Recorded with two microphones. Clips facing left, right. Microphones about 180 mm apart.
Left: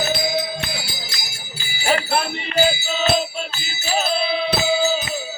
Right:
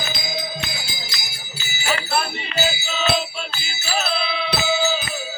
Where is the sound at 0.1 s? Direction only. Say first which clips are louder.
Left 7 dB; 60° left (ahead or behind).